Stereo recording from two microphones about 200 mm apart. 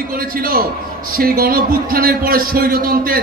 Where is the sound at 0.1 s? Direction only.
45° right (ahead or behind).